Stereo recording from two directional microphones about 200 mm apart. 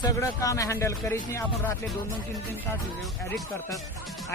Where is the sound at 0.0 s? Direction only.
15° left (ahead or behind).